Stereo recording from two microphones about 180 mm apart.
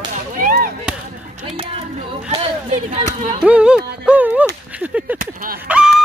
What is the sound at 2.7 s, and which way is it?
Speech, 40° right (ahead or behind).